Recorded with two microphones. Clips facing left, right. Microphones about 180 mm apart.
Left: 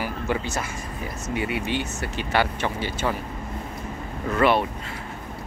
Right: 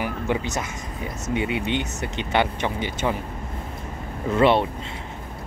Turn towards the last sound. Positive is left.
turn(degrees=-25)  # may be behind; listen again after turning